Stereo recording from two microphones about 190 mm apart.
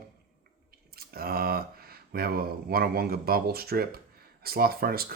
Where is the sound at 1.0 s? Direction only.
50° right (ahead or behind).